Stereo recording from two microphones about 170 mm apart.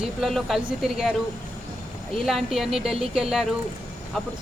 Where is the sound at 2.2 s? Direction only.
Centre (ahead or behind).